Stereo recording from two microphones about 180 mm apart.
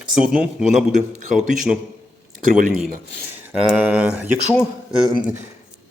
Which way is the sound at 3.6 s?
5° right (ahead or behind).